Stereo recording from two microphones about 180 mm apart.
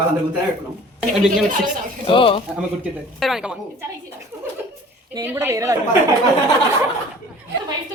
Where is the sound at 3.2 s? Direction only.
Centre (ahead or behind).